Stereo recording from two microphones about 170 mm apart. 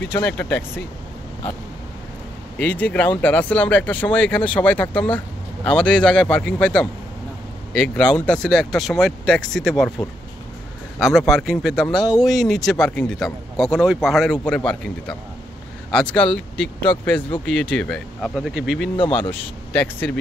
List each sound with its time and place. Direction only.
0.1 s speech: 10° left (ahead or behind)
2.6 s speech: 10° left (ahead or behind)
18.9 s speech: 30° left (ahead or behind)
19.7 s speech: 10° left (ahead or behind)